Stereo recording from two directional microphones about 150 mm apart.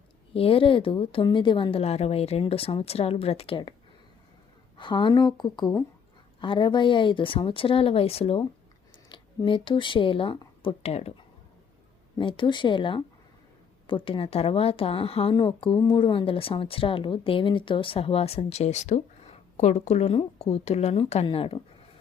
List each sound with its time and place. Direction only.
0.3 s a woman's voice: 40° left (ahead or behind)
4.8 s a woman's voice: 30° left (ahead or behind)
9.0 s speech: 30° left (ahead or behind)
12.1 s a woman's voice: 30° left (ahead or behind)